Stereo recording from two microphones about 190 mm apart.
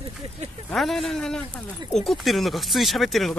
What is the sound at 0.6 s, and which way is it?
Speech, centre (ahead or behind).